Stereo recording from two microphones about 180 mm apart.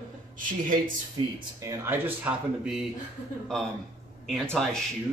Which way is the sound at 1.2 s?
30° right (ahead or behind).